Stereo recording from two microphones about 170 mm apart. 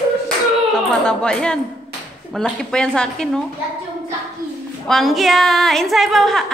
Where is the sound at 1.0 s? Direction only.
5° left (ahead or behind).